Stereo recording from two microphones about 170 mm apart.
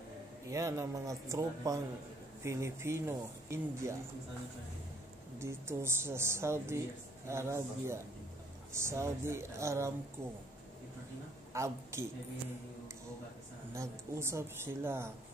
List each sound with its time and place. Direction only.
0.5 s speech: 20° right (ahead or behind)
5.4 s speech: 15° right (ahead or behind)
11.5 s speech: 15° right (ahead or behind)
13.7 s speech: 15° right (ahead or behind)